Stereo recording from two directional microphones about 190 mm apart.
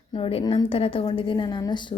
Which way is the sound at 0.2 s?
30° left (ahead or behind).